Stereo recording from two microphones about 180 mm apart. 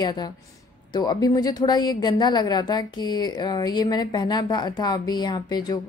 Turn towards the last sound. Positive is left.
turn(degrees=25)  # may be behind; listen again after turning